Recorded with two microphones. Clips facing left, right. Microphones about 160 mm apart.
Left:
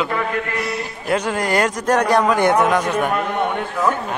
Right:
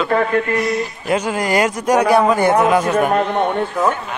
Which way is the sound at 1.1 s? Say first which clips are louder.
Right 1 dB; 5° right (ahead or behind).